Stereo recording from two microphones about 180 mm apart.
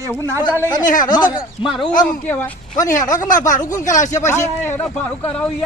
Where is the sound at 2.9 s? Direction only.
45° left (ahead or behind).